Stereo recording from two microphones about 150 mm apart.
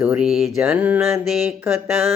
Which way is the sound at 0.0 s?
5° right (ahead or behind).